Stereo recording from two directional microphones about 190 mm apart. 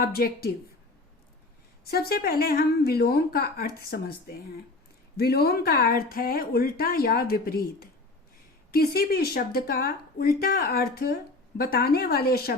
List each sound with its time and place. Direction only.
0.0 s speech: 50° left (ahead or behind)
1.9 s speech: 55° left (ahead or behind)